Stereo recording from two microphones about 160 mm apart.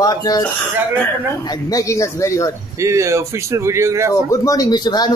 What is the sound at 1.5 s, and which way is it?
Speech, 20° left (ahead or behind).